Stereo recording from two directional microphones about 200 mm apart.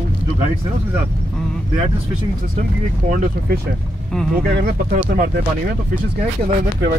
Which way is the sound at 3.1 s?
40° right (ahead or behind).